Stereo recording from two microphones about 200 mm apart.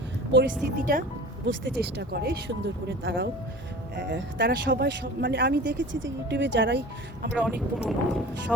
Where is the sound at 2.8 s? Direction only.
60° right (ahead or behind).